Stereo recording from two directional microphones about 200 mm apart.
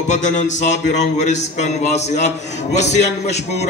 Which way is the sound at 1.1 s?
35° left (ahead or behind).